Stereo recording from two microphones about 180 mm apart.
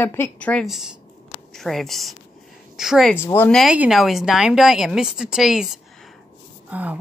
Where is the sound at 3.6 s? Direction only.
5° right (ahead or behind).